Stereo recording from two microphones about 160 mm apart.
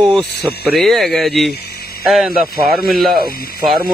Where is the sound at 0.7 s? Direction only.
Centre (ahead or behind).